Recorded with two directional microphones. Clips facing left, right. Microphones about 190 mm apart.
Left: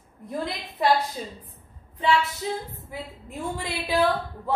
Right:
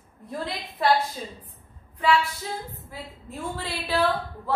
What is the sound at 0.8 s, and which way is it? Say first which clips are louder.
Speech: even; 20° left (ahead or behind).